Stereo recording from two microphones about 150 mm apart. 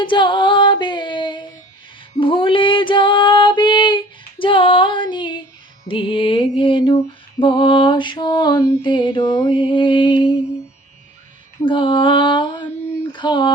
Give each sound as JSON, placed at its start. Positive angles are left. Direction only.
{"t": 0.0, "sound": "music", "side_deg": 35}
{"t": 2.1, "sound": "female singing", "side_deg": 35}
{"t": 5.9, "sound": "mantra", "side_deg": 35}
{"t": 8.8, "sound": "mantra", "side_deg": 30}
{"t": 11.6, "sound": "mantra", "side_deg": 35}
{"t": 13.0, "sound": "a sound", "side_deg": 30}